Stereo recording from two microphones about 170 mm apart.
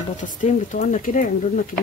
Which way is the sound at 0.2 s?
50° left (ahead or behind).